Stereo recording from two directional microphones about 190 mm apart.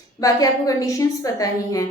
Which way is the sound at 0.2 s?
20° left (ahead or behind).